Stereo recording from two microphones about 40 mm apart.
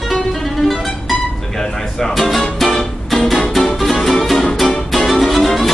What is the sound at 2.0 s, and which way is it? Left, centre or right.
Music, centre.